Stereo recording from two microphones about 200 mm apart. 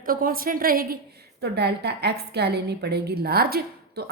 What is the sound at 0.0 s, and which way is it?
A woman's voice, 45° right (ahead or behind).